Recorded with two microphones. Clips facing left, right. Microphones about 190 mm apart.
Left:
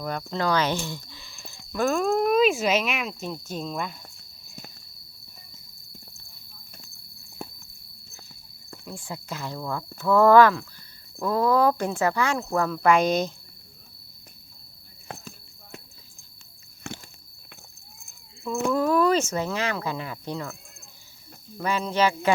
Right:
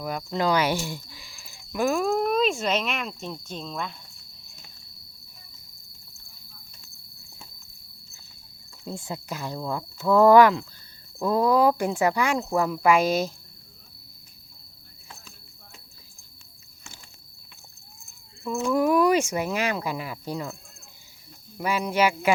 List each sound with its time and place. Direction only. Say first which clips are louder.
0.0 s speech: right 1 dB; 5° right (ahead or behind)
7.4 s a sound: left 13 dB; 60° left (ahead or behind)
8.8 s speech: right 3 dB; 20° right (ahead or behind); by 13.3 s 5° right (ahead or behind)
15.0 s a sound: left 9 dB; 60° left (ahead or behind)
16.9 s walk: left 14 dB; 65° left (ahead or behind)
18.7 s speech: right 1 dB; 15° right (ahead or behind)
21.6 s speech: even; 10° right (ahead or behind)